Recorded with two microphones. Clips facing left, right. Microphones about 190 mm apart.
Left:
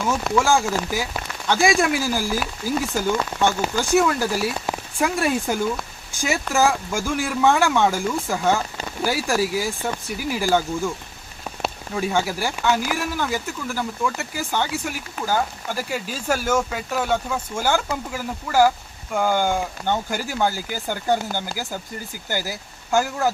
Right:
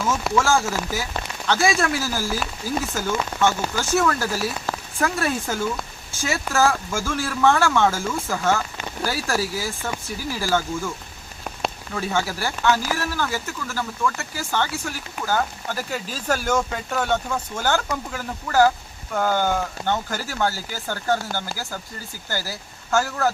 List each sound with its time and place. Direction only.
0.3 s speech: 15° left (ahead or behind)
11.9 s speech: 15° left (ahead or behind)
22.3 s speech: 15° left (ahead or behind)